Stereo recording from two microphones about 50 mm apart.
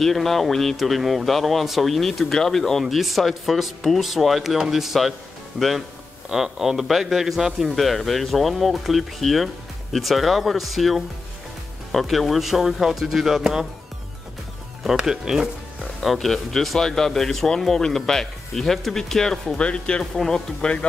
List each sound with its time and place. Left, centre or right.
0.0 s speech: centre
15.0 s speech: centre
16.0 s speech: centre
19.5 s speech: centre